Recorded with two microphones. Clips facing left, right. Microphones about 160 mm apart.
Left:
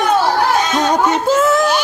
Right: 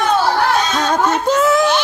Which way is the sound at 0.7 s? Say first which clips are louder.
Left 2 dB; 15° left (ahead or behind).